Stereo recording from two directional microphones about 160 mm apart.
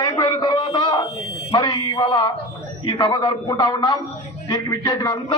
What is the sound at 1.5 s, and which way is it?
A man's voice, 30° left (ahead or behind).